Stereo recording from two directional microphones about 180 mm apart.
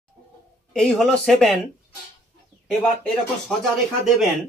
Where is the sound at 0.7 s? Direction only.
5° left (ahead or behind).